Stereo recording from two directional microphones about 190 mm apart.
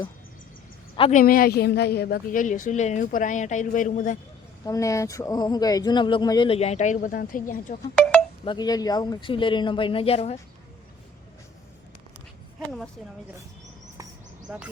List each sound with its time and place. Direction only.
0.9 s speech: 30° left (ahead or behind)
1.2 s a woman's voice: 50° left (ahead or behind)
4.6 s speech: 15° left (ahead or behind); by 7.8 s 45° left (ahead or behind)
8.4 s speech: 20° left (ahead or behind)
14.4 s speech: 5° right (ahead or behind)